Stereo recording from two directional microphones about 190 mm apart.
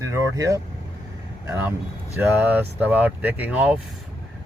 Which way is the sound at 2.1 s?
10° right (ahead or behind).